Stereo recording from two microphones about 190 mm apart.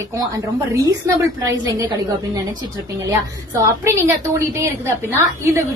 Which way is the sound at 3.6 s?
15° right (ahead or behind).